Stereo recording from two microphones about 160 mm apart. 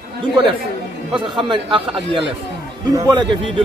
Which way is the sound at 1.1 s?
30° right (ahead or behind).